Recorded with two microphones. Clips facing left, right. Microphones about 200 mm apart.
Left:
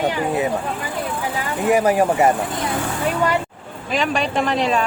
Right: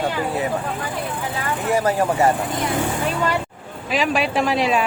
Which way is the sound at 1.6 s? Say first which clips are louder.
Left 4 dB; 15° left (ahead or behind).